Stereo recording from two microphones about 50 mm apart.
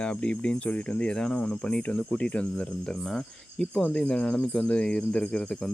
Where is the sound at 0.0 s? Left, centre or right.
Left.